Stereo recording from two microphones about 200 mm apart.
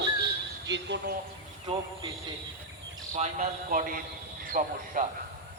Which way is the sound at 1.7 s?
30° right (ahead or behind).